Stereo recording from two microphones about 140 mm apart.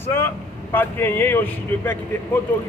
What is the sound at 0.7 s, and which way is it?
Speech, 15° left (ahead or behind).